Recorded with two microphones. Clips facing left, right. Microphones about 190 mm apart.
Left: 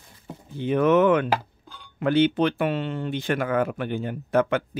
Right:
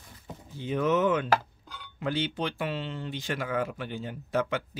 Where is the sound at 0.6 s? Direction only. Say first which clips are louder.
Left 7 dB; 60° left (ahead or behind).